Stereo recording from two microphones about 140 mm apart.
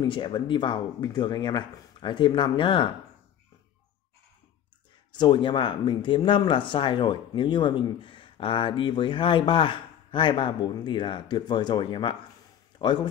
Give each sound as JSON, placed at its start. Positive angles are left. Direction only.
{"t": 0.0, "sound": "speech", "side_deg": 35}
{"t": 5.1, "sound": "speech", "side_deg": 35}